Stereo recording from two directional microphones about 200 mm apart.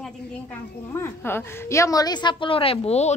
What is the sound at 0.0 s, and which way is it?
A woman's voice, 10° left (ahead or behind).